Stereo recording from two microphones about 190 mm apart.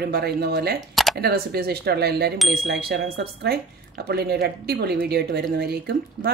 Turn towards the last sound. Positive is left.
turn(degrees=-55)  # may be behind; listen again after turning